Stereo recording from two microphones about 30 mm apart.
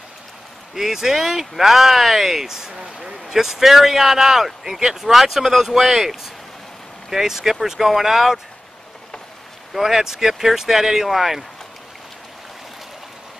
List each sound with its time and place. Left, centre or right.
0.7 s speech: centre
2.8 s speech: right
3.3 s speech: centre
9.8 s speech: centre